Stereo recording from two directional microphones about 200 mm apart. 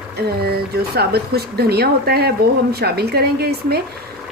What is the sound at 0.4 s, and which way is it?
Speech, 50° right (ahead or behind).